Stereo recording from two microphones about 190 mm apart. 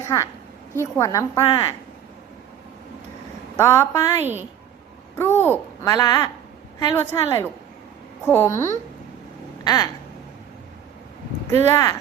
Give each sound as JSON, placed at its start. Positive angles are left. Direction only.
{"t": 0.1, "sound": "a woman's voice", "side_deg": 20}
{"t": 3.6, "sound": "a child's voice", "side_deg": 15}
{"t": 11.7, "sound": "a child's voice", "side_deg": 15}